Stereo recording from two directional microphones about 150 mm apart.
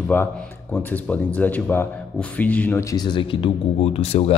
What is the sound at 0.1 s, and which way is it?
Speech, 15° left (ahead or behind).